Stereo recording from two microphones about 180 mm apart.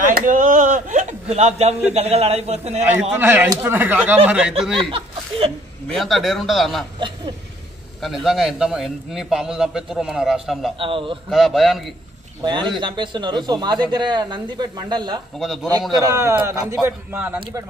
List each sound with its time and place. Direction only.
0.0 s a man's voice: 45° right (ahead or behind)
2.8 s speech: 10° right (ahead or behind)
5.9 s a man's voice: centre (ahead or behind)
8.0 s a man's voice: centre (ahead or behind)
10.8 s speech: 30° right (ahead or behind)
11.2 s a man's voice: centre (ahead or behind)
12.4 s speech: 25° right (ahead or behind)
15.3 s a man's voice: centre (ahead or behind)
16.1 s speech: 15° right (ahead or behind)